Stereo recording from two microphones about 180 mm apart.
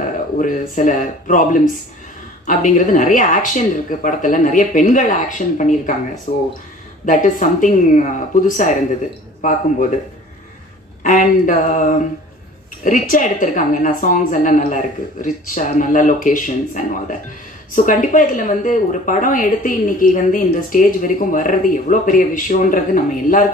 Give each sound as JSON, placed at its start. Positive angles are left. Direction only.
{"t": 0.4, "sound": "speech", "side_deg": 45}
{"t": 11.1, "sound": "speech", "side_deg": 50}